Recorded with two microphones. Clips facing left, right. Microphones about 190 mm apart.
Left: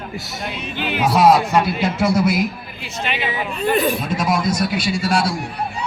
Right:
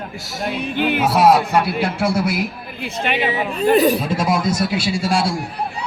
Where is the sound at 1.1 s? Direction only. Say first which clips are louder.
Left 2 dB; 5° right (ahead or behind).